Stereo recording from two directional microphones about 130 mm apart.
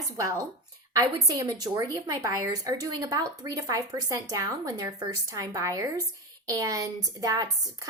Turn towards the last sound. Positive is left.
turn(degrees=-25)  # may be behind; listen again after turning